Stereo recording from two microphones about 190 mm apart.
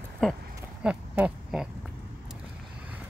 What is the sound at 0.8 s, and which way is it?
Oink, 5° right (ahead or behind).